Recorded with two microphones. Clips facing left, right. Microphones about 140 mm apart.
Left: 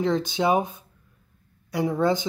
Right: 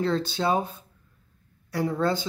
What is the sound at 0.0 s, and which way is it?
Speech, 15° left (ahead or behind).